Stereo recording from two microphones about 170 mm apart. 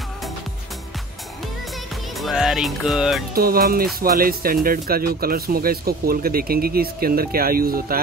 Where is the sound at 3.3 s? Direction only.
60° right (ahead or behind).